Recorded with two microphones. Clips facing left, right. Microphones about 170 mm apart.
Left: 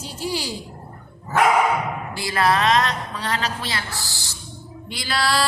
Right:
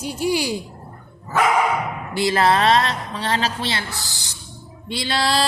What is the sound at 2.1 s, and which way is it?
A woman's voice, 25° right (ahead or behind).